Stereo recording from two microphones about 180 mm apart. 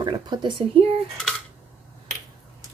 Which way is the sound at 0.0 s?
25° right (ahead or behind).